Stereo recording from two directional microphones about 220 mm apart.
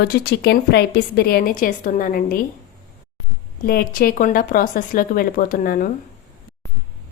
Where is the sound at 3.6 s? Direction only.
45° left (ahead or behind).